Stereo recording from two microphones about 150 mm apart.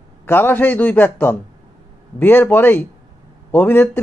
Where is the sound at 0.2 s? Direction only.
15° left (ahead or behind).